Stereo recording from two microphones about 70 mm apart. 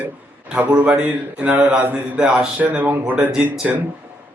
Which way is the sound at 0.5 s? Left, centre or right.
Centre.